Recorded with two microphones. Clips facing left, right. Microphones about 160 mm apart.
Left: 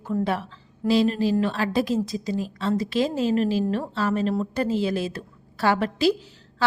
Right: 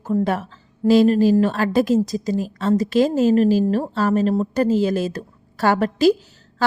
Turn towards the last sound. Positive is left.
turn(degrees=-45)  # may be behind; listen again after turning